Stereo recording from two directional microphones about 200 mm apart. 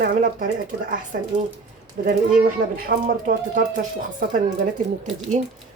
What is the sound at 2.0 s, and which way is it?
Speech, 40° right (ahead or behind).